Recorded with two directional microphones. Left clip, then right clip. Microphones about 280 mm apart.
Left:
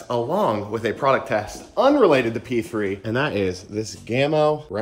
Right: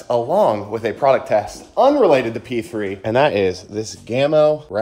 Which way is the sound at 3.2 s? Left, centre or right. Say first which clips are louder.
Right 6 dB; centre.